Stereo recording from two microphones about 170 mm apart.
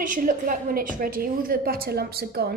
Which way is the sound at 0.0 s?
50° right (ahead or behind).